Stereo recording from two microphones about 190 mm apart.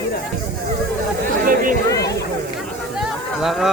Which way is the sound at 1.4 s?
45° right (ahead or behind).